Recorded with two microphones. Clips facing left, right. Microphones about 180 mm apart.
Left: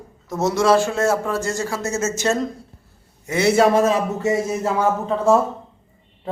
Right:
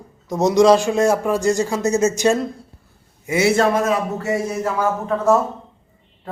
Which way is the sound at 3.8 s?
30° left (ahead or behind).